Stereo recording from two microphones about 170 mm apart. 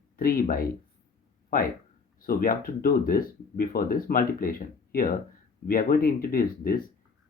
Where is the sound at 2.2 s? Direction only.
55° left (ahead or behind).